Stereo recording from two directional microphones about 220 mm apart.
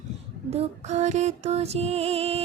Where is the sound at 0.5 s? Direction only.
30° right (ahead or behind).